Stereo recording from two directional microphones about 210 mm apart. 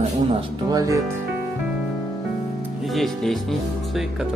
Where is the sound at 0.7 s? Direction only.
15° right (ahead or behind).